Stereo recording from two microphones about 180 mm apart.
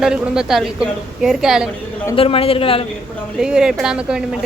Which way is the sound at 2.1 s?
30° left (ahead or behind).